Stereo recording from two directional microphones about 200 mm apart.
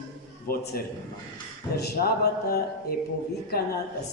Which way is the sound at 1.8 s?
50° left (ahead or behind).